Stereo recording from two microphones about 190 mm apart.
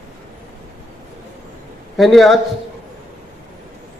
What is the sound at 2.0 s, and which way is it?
Speech, centre (ahead or behind).